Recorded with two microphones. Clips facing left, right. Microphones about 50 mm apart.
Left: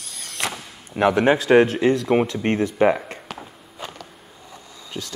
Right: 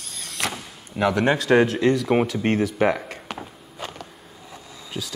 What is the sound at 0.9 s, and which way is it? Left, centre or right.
Speech, left.